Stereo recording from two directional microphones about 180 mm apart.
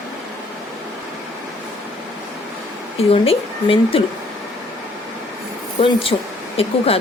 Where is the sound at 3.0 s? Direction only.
30° left (ahead or behind).